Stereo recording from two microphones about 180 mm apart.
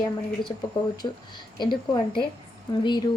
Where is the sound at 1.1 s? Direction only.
20° left (ahead or behind).